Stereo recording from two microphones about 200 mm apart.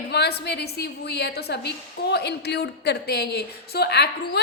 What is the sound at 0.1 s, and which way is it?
A woman's voice, 55° left (ahead or behind).